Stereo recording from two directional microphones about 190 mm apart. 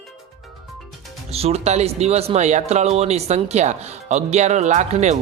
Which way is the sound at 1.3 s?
35° right (ahead or behind).